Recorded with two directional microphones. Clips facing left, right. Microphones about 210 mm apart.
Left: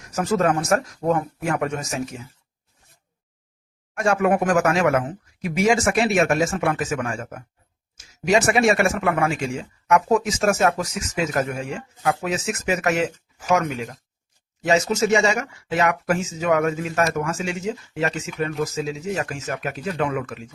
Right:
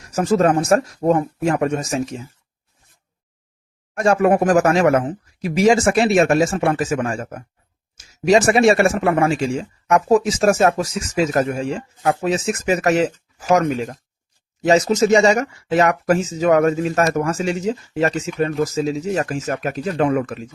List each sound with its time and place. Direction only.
0.2 s speech: 30° right (ahead or behind)
3.9 s speech: 35° right (ahead or behind)